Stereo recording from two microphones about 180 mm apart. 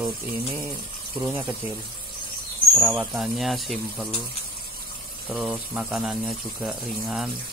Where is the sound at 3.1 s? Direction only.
Centre (ahead or behind).